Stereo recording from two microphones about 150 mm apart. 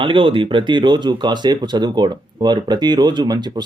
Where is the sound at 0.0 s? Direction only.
35° right (ahead or behind).